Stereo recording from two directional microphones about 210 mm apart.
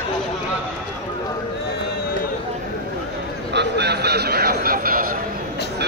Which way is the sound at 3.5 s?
50° right (ahead or behind).